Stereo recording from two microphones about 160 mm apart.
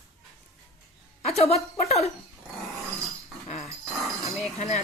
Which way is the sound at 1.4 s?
40° left (ahead or behind).